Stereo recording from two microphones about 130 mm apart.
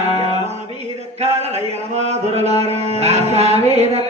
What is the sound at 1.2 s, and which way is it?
Mantra, 55° right (ahead or behind).